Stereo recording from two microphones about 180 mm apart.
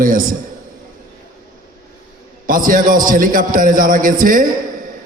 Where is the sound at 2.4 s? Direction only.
50° right (ahead or behind).